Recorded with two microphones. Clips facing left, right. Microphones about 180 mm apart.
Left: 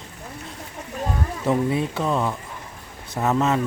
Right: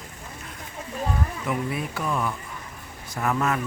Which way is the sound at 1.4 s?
30° left (ahead or behind).